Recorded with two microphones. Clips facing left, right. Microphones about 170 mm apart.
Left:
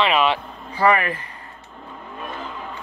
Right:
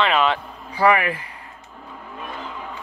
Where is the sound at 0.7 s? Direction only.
10° right (ahead or behind).